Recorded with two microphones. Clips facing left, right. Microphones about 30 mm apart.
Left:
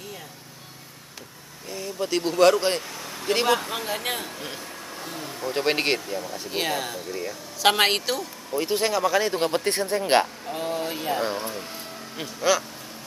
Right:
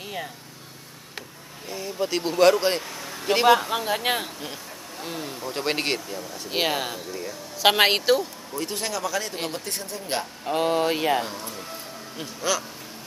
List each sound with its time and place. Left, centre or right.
1.7 s a man's voice: centre
3.9 s speech: right
5.4 s speech: centre
6.5 s a woman's voice: centre
7.1 s speech: centre
7.6 s a woman's voice: centre
8.5 s speech: centre
9.7 s speech: left
10.5 s speech: right
11.2 s speech: left
12.2 s speech: centre